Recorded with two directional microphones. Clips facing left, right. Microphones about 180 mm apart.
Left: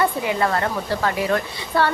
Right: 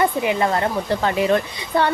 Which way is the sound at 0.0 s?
20° right (ahead or behind).